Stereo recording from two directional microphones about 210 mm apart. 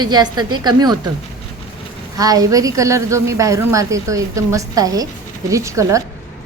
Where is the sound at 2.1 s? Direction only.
15° right (ahead or behind).